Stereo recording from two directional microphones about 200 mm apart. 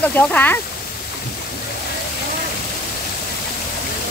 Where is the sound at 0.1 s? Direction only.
10° left (ahead or behind).